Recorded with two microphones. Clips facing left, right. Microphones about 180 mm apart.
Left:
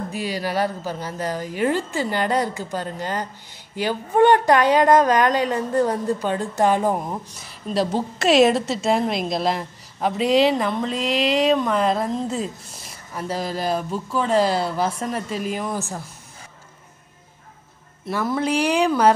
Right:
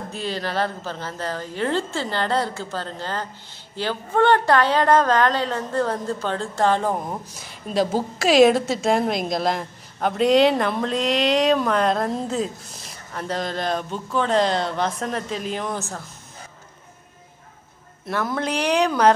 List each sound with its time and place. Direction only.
0.1 s a woman's voice: 10° left (ahead or behind)
7.1 s a woman's voice: centre (ahead or behind)
18.0 s a woman's voice: 5° left (ahead or behind)